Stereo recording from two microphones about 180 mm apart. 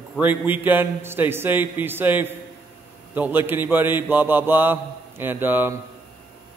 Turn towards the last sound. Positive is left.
turn(degrees=-10)  # may be behind; listen again after turning